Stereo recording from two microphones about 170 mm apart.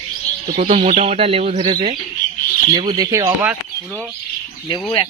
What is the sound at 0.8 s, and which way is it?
Speech, 40° right (ahead or behind).